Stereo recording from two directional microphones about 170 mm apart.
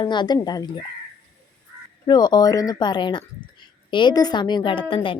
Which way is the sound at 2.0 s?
25° left (ahead or behind).